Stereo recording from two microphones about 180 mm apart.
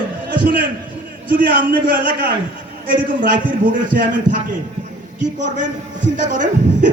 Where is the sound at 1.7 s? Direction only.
55° right (ahead or behind).